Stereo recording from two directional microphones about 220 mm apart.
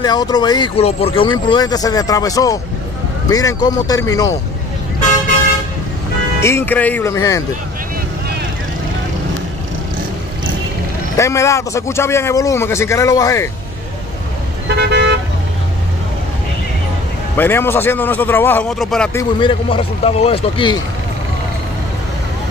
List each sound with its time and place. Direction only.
0.0 s speech: 20° left (ahead or behind)
6.4 s speech: 10° left (ahead or behind)
11.1 s speech: 15° left (ahead or behind)
14.8 s toot: 50° right (ahead or behind)
17.4 s speech: 10° left (ahead or behind)
19.1 s speech: 25° left (ahead or behind)